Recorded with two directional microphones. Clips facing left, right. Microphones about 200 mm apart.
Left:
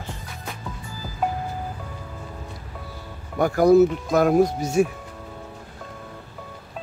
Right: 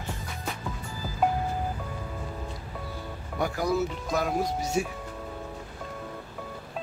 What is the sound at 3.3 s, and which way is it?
Speech, 50° left (ahead or behind).